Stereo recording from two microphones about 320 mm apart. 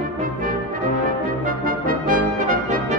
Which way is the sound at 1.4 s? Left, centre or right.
Right.